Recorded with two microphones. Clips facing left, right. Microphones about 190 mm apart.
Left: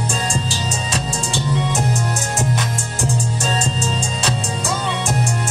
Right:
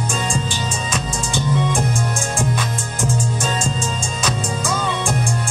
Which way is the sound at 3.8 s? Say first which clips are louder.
Left 1 dB; 35° left (ahead or behind).